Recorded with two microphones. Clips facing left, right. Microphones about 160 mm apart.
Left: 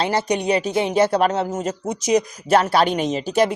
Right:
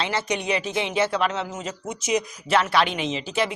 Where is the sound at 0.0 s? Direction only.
40° left (ahead or behind).